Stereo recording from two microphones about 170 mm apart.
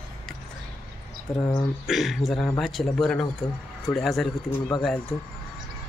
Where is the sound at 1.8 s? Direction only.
Centre (ahead or behind).